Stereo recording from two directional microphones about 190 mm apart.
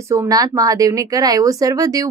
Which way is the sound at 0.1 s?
15° right (ahead or behind).